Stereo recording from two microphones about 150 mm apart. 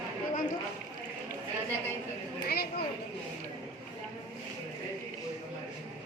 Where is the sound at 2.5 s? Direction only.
90° left.